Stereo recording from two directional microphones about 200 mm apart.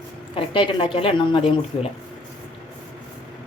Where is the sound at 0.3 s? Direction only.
25° left (ahead or behind).